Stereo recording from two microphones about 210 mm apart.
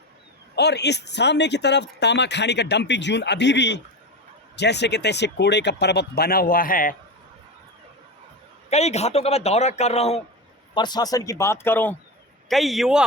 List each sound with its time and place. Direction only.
0.5 s speech: 55° left (ahead or behind)
8.7 s a man's voice: 30° left (ahead or behind)
10.8 s a man's voice: 20° left (ahead or behind); by 13.1 s centre (ahead or behind)